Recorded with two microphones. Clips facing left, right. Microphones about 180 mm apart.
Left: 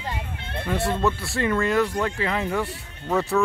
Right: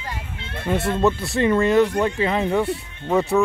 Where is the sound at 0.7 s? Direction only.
20° right (ahead or behind).